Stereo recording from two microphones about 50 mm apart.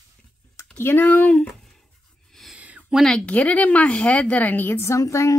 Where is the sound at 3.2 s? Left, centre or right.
Left.